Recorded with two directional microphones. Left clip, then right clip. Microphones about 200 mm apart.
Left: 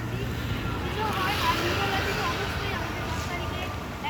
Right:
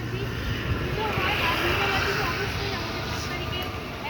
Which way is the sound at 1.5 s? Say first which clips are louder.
Right 3 dB; 60° left (ahead or behind).